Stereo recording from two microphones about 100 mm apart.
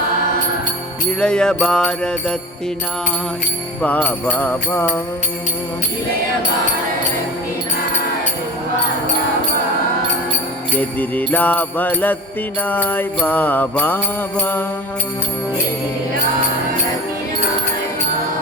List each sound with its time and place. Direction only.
1.2 s jingle bell: 10° left (ahead or behind)
3.8 s jingle bell: 15° left (ahead or behind)
10.8 s jingle bell: 15° left (ahead or behind)